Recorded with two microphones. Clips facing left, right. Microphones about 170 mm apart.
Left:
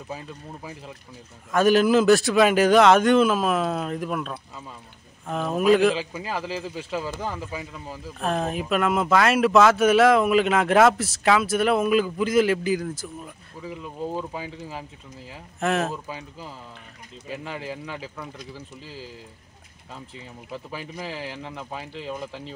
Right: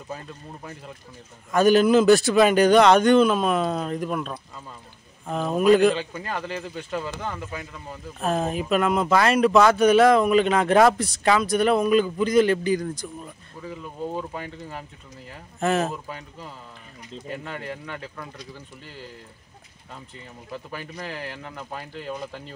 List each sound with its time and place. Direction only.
0.1 s speech: 5° left (ahead or behind)